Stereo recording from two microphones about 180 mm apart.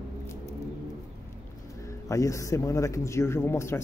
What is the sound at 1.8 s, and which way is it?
A man's voice, 15° left (ahead or behind).